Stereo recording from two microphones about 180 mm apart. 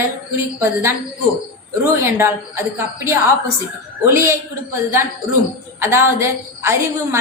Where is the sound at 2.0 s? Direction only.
15° right (ahead or behind).